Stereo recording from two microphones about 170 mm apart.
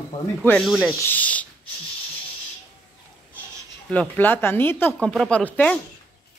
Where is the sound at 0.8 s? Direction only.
10° left (ahead or behind).